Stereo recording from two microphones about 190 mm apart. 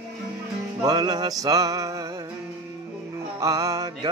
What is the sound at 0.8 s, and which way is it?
Music, 20° right (ahead or behind).